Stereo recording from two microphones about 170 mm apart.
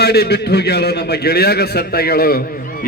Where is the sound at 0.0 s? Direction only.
70° left (ahead or behind).